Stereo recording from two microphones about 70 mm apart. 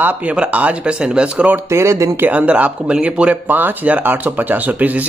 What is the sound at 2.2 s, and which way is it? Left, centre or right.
Speech, right.